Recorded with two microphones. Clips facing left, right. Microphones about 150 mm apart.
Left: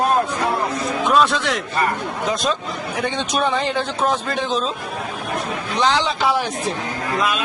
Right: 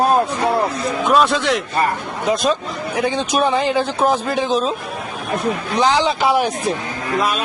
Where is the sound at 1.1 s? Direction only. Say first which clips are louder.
Right 2 dB; centre (ahead or behind).